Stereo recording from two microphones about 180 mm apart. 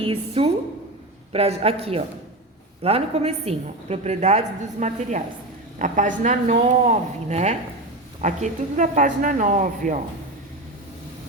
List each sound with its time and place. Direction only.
0.0 s a woman's voice: 35° right (ahead or behind)